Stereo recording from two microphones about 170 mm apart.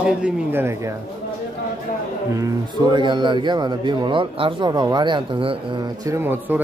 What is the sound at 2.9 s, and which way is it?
A man's voice, 30° right (ahead or behind).